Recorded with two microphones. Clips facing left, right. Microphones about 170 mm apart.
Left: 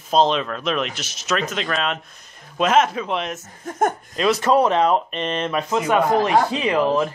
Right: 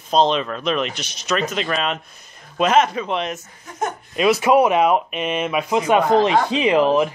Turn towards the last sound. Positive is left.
turn(degrees=-20)  # may be behind; listen again after turning